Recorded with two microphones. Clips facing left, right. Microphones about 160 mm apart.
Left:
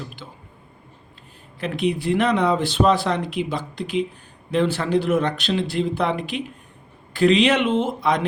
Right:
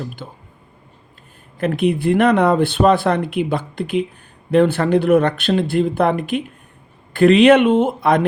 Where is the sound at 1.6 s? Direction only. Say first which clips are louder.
Right 5 dB; 50° right (ahead or behind).